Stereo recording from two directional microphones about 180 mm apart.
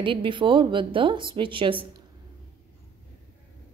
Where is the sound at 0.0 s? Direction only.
30° right (ahead or behind).